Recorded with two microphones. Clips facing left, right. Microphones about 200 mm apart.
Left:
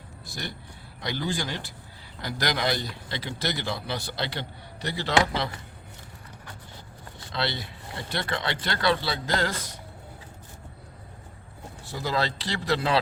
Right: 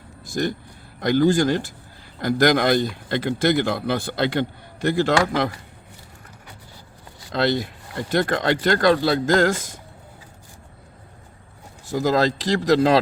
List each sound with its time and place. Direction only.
0.3 s a man's voice: 45° right (ahead or behind)
7.3 s a man's voice: 45° right (ahead or behind)
11.9 s speech: 45° right (ahead or behind)